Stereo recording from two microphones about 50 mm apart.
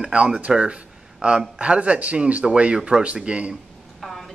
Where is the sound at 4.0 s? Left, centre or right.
Centre.